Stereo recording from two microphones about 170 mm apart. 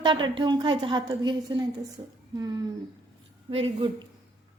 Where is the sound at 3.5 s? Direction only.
35° right (ahead or behind).